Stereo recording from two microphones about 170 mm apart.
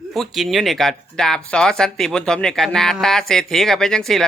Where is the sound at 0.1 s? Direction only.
Centre (ahead or behind).